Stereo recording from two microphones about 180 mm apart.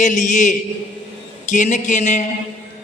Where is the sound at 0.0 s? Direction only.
40° left (ahead or behind).